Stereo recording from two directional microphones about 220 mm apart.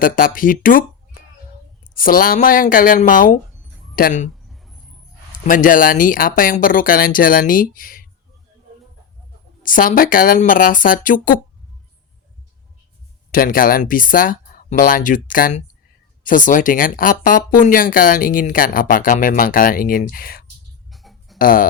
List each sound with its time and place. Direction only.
0.0 s speech: 40° left (ahead or behind)
2.0 s speech: 40° left (ahead or behind)
4.4 s a sound: centre (ahead or behind)
5.5 s speech: 40° left (ahead or behind)
9.6 s speech: 40° left (ahead or behind)
13.3 s speech: 40° left (ahead or behind)
20.9 s a sound: centre (ahead or behind)
21.3 s speech: 40° left (ahead or behind)